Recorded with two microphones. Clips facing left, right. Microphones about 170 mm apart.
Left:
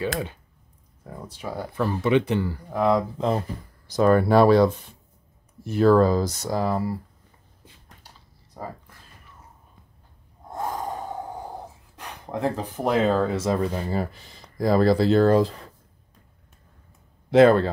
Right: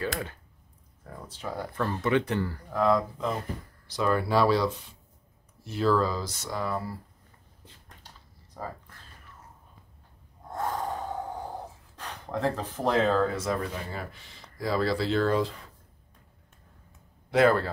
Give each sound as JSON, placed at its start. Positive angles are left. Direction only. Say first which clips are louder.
{"t": 1.0, "sound": "speech", "louder": "left 3 dB", "side_deg": 15}
{"t": 3.8, "sound": "speech", "louder": "left 8 dB", "side_deg": 45}
{"t": 8.5, "sound": "a sound", "louder": "left 2 dB", "side_deg": 10}
{"t": 10.5, "sound": "snort", "louder": "left 1 dB", "side_deg": 10}
{"t": 12.0, "sound": "speech", "louder": "left 2 dB", "side_deg": 15}
{"t": 17.3, "sound": "speech", "louder": "left 7 dB", "side_deg": 25}